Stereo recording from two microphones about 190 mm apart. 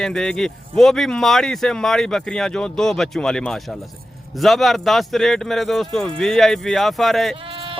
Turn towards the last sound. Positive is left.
turn(degrees=-30)  # may be behind; listen again after turning